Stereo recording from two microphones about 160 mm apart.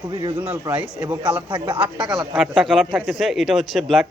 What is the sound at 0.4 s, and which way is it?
Speech, 10° right (ahead or behind).